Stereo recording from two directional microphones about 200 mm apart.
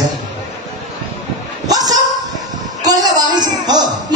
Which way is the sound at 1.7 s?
20° right (ahead or behind).